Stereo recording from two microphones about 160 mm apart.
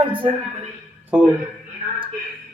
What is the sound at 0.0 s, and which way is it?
Speech, 30° right (ahead or behind).